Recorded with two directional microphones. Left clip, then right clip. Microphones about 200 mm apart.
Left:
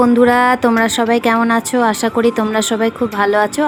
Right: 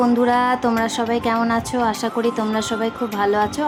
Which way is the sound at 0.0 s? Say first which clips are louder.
Left 6 dB; 25° left (ahead or behind).